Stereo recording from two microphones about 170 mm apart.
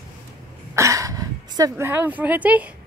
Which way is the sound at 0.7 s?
20° right (ahead or behind).